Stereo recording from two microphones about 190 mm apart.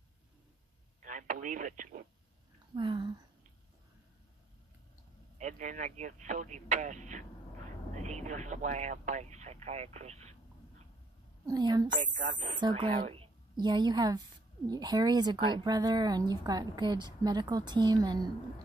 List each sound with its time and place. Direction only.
1.0 s speech: 40° right (ahead or behind)
2.7 s a woman's voice: 25° right (ahead or behind)
5.4 s speech: 40° right (ahead or behind)
11.4 s a woman's voice: 20° right (ahead or behind)
11.9 s speech: 40° right (ahead or behind)
12.5 s a woman's voice: 25° right (ahead or behind)